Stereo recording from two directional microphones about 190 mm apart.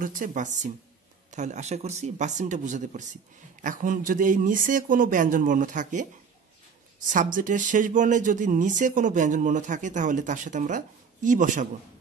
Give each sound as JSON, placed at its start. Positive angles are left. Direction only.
{"t": 0.0, "sound": "speech", "side_deg": -45}
{"t": 7.1, "sound": "speech", "side_deg": -45}